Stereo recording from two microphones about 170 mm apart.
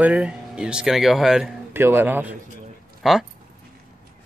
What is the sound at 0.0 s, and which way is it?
Speech, 5° right (ahead or behind).